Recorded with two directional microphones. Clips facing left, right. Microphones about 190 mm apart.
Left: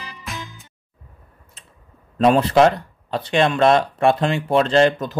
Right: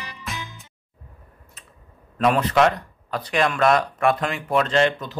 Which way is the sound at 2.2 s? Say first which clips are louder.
Left 4 dB; 30° left (ahead or behind).